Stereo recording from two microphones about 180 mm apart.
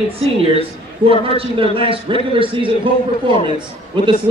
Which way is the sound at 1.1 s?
30° right (ahead or behind).